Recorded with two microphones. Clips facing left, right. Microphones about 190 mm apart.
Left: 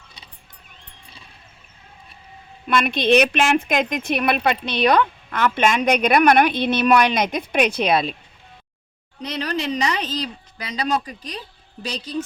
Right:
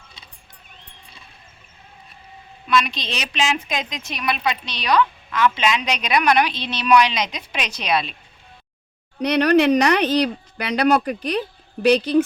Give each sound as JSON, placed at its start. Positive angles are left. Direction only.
{"t": 2.6, "sound": "speech", "side_deg": 55}
{"t": 9.2, "sound": "speech", "side_deg": -65}